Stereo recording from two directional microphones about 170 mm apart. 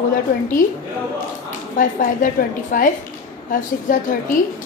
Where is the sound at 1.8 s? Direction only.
50° left (ahead or behind).